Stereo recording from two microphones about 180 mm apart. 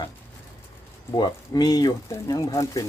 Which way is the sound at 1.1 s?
20° left (ahead or behind).